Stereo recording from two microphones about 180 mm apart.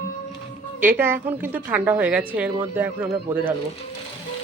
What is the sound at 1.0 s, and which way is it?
A woman's voice, 10° right (ahead or behind).